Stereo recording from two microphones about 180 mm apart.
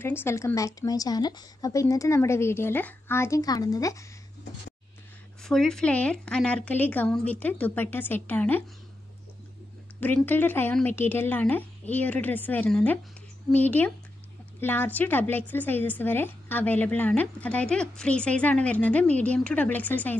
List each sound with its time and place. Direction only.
0.0 s a woman's voice: 10° left (ahead or behind)
5.4 s a woman's voice: centre (ahead or behind)
9.9 s a woman's voice: 10° left (ahead or behind)